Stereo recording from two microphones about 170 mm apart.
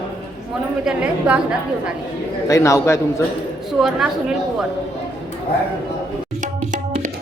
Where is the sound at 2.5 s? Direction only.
20° left (ahead or behind).